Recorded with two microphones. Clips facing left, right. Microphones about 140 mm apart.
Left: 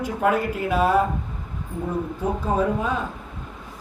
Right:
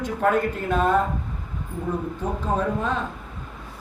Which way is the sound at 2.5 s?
10° left (ahead or behind).